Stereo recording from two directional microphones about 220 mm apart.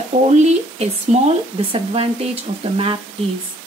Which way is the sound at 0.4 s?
30° right (ahead or behind).